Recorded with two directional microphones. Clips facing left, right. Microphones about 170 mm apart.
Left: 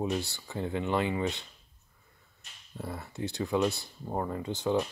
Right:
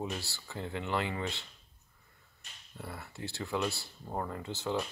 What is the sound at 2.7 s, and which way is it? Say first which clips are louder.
Speech: left 6 dB; 20° left (ahead or behind).